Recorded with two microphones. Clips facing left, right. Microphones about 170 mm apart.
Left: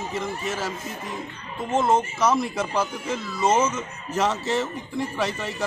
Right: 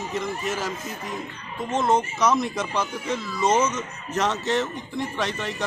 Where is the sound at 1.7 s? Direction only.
5° left (ahead or behind).